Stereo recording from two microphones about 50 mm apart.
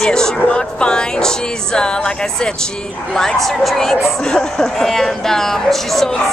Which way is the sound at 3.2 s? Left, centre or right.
Centre.